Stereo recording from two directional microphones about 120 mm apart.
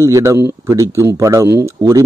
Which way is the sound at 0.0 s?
25° right (ahead or behind).